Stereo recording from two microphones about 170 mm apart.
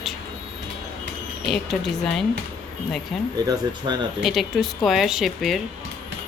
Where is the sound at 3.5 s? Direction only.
25° right (ahead or behind).